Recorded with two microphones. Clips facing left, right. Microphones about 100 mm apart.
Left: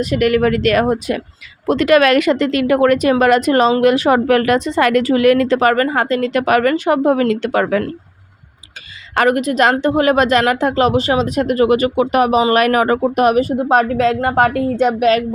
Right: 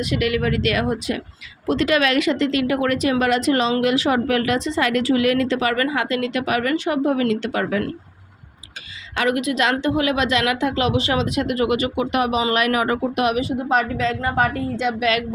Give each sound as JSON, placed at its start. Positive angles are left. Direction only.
{"t": 0.0, "sound": "speech", "side_deg": 45}
{"t": 9.1, "sound": "speech", "side_deg": 45}